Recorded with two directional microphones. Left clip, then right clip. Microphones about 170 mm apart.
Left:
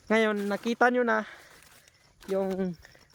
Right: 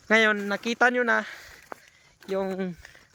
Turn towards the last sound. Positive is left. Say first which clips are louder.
# even
turn(degrees=10)  # may be behind; listen again after turning